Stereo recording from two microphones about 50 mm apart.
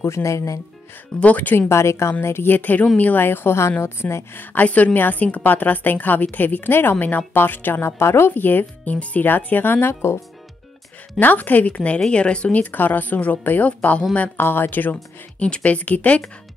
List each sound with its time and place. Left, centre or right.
0.0 s speech: left
1.2 s a woman's voice: left
1.7 s a woman's voice: left
2.2 s speech: left
4.6 s a woman's voice: left
7.8 s a woman's voice: left
8.3 s a woman's voice: left
8.9 s speech: left
11.1 s a woman's voice: left
12.7 s a woman's voice: left
14.3 s a woman's voice: left
15.3 s speech: left